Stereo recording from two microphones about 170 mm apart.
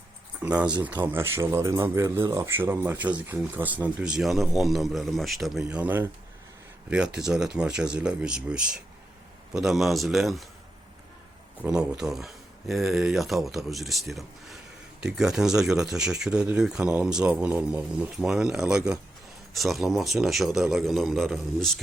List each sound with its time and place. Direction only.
0.4 s speech: 5° right (ahead or behind)
11.6 s speech: 5° right (ahead or behind)